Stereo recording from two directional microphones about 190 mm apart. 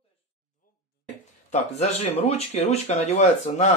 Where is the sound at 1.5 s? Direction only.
35° left (ahead or behind).